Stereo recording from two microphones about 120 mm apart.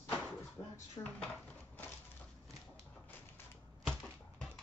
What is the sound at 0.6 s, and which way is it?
Speech, 30° left (ahead or behind).